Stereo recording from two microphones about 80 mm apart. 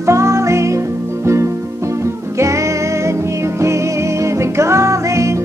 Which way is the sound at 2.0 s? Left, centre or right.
Right.